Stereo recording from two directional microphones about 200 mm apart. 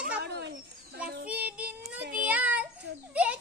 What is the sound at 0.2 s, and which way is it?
Bird, 60° right (ahead or behind).